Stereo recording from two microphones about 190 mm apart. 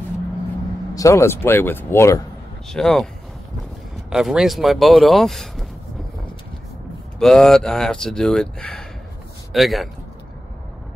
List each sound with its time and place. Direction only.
0.9 s speech: 15° left (ahead or behind)
2.7 s speech: centre (ahead or behind)
4.1 s speech: centre (ahead or behind)
7.2 s speech: centre (ahead or behind)